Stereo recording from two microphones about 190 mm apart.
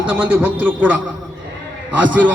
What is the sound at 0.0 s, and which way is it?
Speech, 5° right (ahead or behind).